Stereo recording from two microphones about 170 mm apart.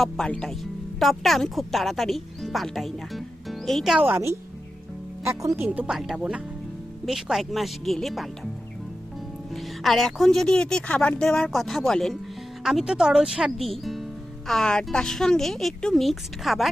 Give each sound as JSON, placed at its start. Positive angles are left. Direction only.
{"t": 0.0, "sound": "speech", "side_deg": 5}
{"t": 4.1, "sound": "speech", "side_deg": -15}
{"t": 9.5, "sound": "speech", "side_deg": 0}